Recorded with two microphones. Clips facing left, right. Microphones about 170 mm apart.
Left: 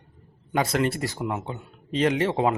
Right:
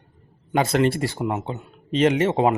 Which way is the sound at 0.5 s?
25° right (ahead or behind).